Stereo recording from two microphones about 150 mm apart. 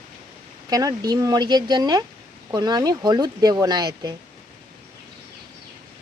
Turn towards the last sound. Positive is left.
turn(degrees=-30)  # may be behind; listen again after turning